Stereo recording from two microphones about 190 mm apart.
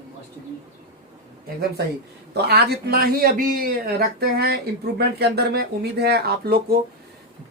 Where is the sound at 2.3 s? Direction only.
60° right (ahead or behind).